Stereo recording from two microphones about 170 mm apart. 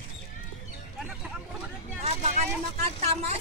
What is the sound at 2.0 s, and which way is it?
Vehicle, 40° right (ahead or behind).